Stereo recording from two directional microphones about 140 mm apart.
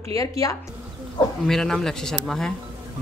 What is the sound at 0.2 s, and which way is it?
Speech, 25° left (ahead or behind).